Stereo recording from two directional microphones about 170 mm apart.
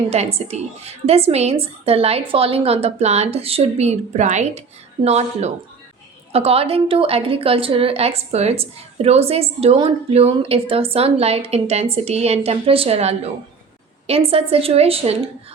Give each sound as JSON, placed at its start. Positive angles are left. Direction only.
{"t": 0.1, "sound": "a woman's voice", "side_deg": -40}